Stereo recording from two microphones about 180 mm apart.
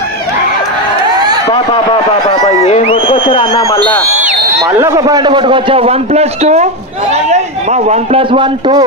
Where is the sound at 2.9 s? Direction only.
25° left (ahead or behind).